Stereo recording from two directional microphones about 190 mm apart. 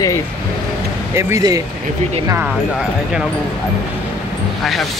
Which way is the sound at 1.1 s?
15° right (ahead or behind).